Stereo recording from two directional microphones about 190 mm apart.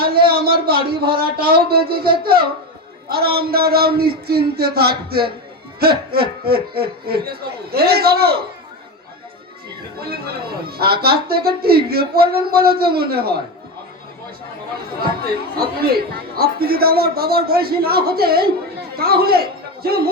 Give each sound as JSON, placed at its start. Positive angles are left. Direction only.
{"t": 0.0, "sound": "a sound", "side_deg": -55}
{"t": 3.1, "sound": "speech", "side_deg": -55}
{"t": 10.7, "sound": "speech", "side_deg": -55}
{"t": 15.5, "sound": "a woman's voice", "side_deg": -55}